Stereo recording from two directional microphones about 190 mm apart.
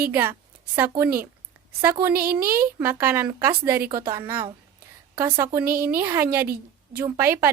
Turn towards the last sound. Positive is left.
turn(degrees=-15)  # may be behind; listen again after turning